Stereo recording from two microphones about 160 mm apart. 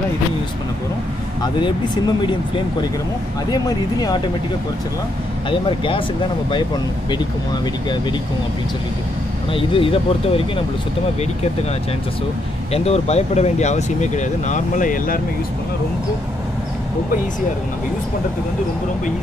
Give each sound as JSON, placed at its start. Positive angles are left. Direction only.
{"t": 1.4, "sound": "speech", "side_deg": 25}
{"t": 5.5, "sound": "speech", "side_deg": 35}
{"t": 9.5, "sound": "speech", "side_deg": 35}
{"t": 12.7, "sound": "speech", "side_deg": 40}